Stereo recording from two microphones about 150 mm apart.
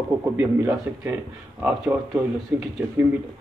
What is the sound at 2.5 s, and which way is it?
Speech, 10° right (ahead or behind).